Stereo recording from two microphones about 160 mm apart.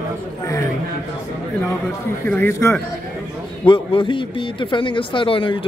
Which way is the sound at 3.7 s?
30° left (ahead or behind).